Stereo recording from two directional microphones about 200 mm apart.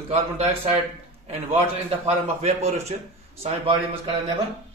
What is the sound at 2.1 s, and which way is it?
Speech, 35° right (ahead or behind).